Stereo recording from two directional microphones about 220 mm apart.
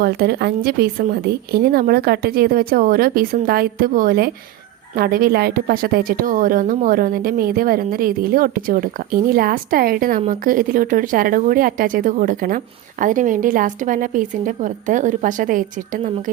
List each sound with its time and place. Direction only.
0.0 s a woman's voice: 45° right (ahead or behind)